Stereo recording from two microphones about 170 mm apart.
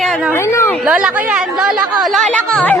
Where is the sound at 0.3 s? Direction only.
15° left (ahead or behind).